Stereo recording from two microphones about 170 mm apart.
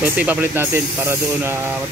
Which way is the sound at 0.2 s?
10° right (ahead or behind).